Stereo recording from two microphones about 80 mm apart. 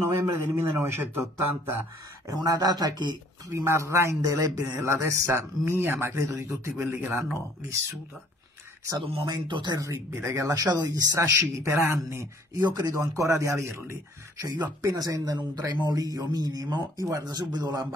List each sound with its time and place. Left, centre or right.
0.2 s speech: right
2.2 s speech: right
3.4 s speech: right
8.9 s speech: right
9.8 s speech: right
10.5 s speech: right
11.1 s speech: right
12.5 s speech: right